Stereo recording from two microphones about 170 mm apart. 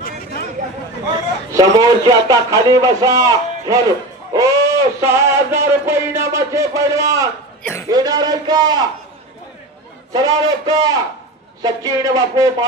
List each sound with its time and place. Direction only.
0.0 s chatter: 65° left (ahead or behind)
1.5 s a man's voice: 20° right (ahead or behind)
10.1 s a man's voice: 20° right (ahead or behind)